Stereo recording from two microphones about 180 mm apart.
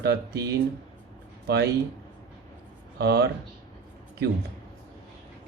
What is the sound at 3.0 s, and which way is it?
Speech, 65° right (ahead or behind).